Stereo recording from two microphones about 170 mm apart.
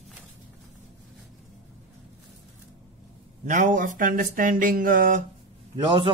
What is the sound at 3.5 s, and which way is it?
Speech, 50° right (ahead or behind).